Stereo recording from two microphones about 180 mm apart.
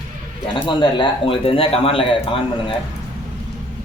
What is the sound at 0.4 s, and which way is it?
Speech, 25° left (ahead or behind).